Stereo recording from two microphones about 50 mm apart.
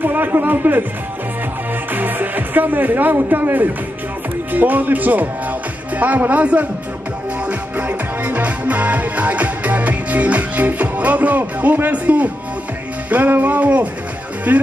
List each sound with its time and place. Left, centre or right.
0.0 s music: right
2.0 s speech: right
4.5 s music: right
7.7 s music: right